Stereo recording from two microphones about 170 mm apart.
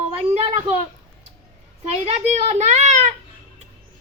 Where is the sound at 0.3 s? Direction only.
40° right (ahead or behind).